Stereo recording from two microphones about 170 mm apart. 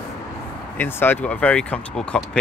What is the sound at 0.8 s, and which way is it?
Speech, 10° left (ahead or behind).